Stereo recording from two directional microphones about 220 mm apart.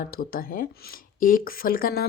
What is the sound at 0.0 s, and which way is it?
Speech, 40° left (ahead or behind).